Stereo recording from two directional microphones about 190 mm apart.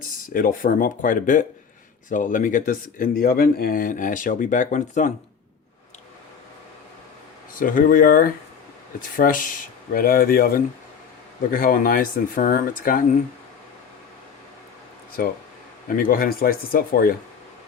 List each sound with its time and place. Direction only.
0.3 s speech: 45° left (ahead or behind)
7.6 s speech: 45° left (ahead or behind)
15.2 s speech: 50° left (ahead or behind)